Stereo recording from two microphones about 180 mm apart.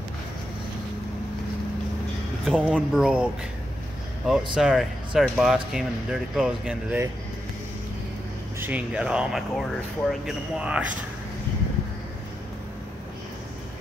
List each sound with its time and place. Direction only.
2.4 s speech: centre (ahead or behind)
4.3 s speech: centre (ahead or behind)
8.5 s speech: 10° right (ahead or behind)